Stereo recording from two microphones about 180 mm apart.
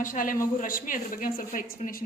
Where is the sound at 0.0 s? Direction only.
50° left (ahead or behind).